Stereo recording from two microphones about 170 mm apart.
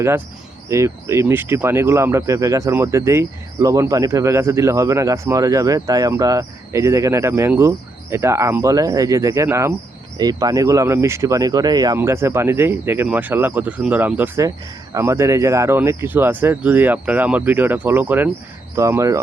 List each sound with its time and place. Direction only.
0.7 s speech: 15° right (ahead or behind)